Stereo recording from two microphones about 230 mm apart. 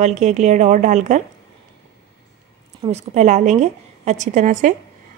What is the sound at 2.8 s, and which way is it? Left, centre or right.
Speech, right.